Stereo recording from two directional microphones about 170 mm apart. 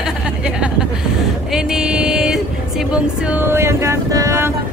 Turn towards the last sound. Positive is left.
turn(degrees=-20)  # may be behind; listen again after turning